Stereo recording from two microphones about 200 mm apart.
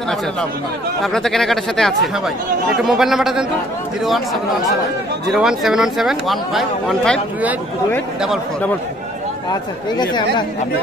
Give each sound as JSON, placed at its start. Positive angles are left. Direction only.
{"t": 1.0, "sound": "speech", "side_deg": 0}
{"t": 5.3, "sound": "speech", "side_deg": 0}
{"t": 9.5, "sound": "speech", "side_deg": 20}